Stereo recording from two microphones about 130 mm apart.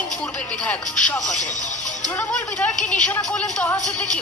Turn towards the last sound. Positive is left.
turn(degrees=10)  # may be behind; listen again after turning